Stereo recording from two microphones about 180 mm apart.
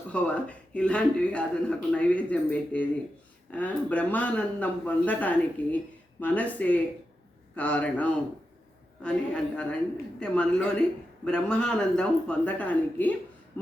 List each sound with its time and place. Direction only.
0.1 s a man's voice: 5° left (ahead or behind)